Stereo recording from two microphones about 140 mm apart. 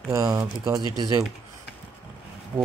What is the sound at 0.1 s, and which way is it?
Speech, 25° right (ahead or behind).